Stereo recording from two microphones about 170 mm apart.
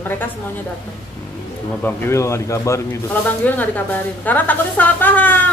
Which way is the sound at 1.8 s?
15° left (ahead or behind).